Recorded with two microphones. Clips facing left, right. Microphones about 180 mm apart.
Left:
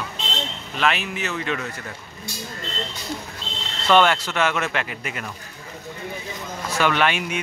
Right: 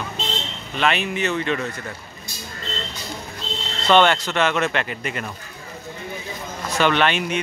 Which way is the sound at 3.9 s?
5° left (ahead or behind).